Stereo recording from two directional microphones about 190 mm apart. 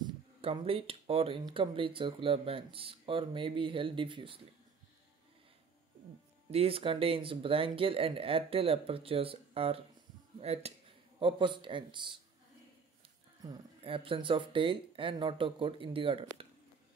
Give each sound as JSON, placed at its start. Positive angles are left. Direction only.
{"t": 0.0, "sound": "speech", "side_deg": -30}
{"t": 6.5, "sound": "speech", "side_deg": -30}
{"t": 13.4, "sound": "speech", "side_deg": -25}